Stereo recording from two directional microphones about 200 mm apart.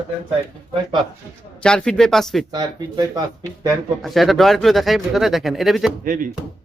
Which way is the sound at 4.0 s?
Centre (ahead or behind).